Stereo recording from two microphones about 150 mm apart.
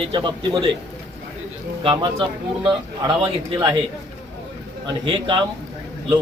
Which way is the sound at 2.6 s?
30° right (ahead or behind).